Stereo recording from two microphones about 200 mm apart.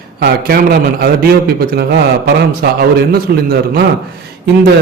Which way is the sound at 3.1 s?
50° right (ahead or behind).